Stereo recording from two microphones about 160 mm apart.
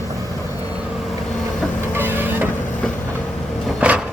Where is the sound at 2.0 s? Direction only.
15° right (ahead or behind).